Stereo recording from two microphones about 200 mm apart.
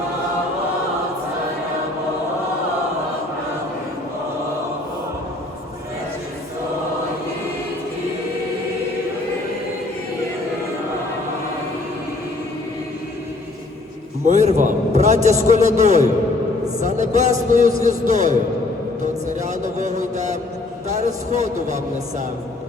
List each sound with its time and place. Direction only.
14.3 s a man's voice: 35° right (ahead or behind)
19.4 s a sound: 35° right (ahead or behind)
20.8 s a man's voice: 35° right (ahead or behind)